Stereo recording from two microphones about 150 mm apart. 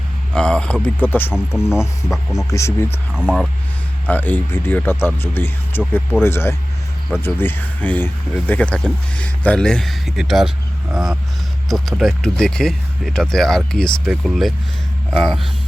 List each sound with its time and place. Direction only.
0.3 s speech: 5° left (ahead or behind)
2.0 s speech: centre (ahead or behind)
2.5 s speech: 20° left (ahead or behind)
3.2 s speech: 5° right (ahead or behind)
4.0 s speech: 10° left (ahead or behind)